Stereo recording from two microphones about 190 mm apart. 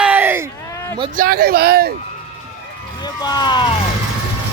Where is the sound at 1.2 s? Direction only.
50° right (ahead or behind).